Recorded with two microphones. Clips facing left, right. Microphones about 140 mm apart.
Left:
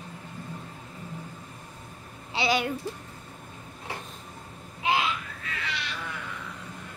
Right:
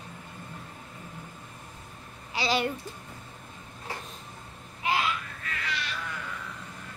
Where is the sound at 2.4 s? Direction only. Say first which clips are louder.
Left 3 dB; 25° left (ahead or behind).